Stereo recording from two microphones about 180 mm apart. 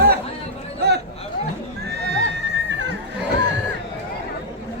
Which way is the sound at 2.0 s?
70° right (ahead or behind).